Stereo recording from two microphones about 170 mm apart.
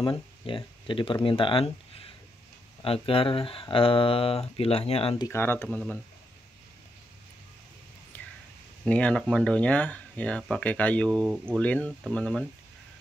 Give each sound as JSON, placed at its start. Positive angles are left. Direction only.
{"t": 0.0, "sound": "speech", "side_deg": 30}
{"t": 5.3, "sound": "speech", "side_deg": 15}
{"t": 8.1, "sound": "a sound", "side_deg": 10}
{"t": 8.8, "sound": "speech", "side_deg": 5}